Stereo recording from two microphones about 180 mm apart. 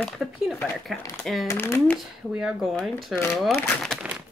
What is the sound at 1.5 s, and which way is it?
Speech, 15° left (ahead or behind).